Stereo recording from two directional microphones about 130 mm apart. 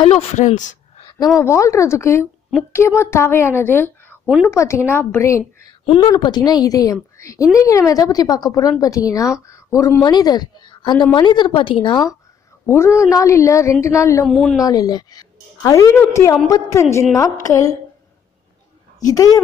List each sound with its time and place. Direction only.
0.0 s speech: 45° left (ahead or behind); by 0.7 s 70° left (ahead or behind)
1.4 s a woman's voice: 25° left (ahead or behind)
6.0 s a woman's voice: 35° left (ahead or behind)
12.6 s a woman's voice: 20° left (ahead or behind)
14.2 s speech: centre (ahead or behind)
14.6 s a woman's voice: 30° left (ahead or behind)
19.0 s a woman's voice: 30° left (ahead or behind)